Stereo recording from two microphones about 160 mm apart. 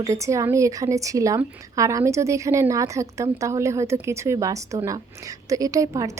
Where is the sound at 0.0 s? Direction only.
20° right (ahead or behind).